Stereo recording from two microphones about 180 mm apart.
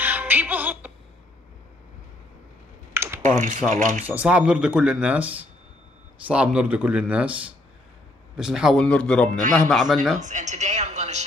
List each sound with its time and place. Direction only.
0.0 s music: 10° right (ahead or behind)
2.9 s typing: 15° right (ahead or behind)
3.3 s speech: 45° right (ahead or behind)
4.0 s speech: 10° right (ahead or behind)
10.1 s speech: 45° right (ahead or behind)